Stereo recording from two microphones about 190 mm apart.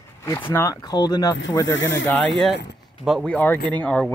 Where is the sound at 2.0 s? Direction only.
5° left (ahead or behind).